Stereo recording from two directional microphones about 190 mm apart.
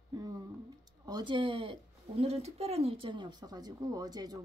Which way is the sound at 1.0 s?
20° right (ahead or behind).